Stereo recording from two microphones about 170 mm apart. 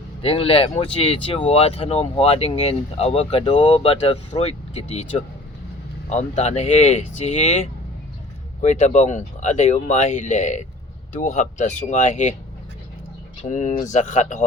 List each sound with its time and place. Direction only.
0.2 s speech: 35° left (ahead or behind)
13.5 s speech: 45° left (ahead or behind)